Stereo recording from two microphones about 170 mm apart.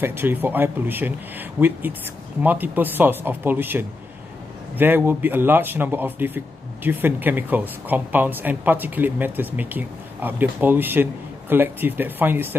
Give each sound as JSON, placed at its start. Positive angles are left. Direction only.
{"t": 0.0, "sound": "speech", "side_deg": -10}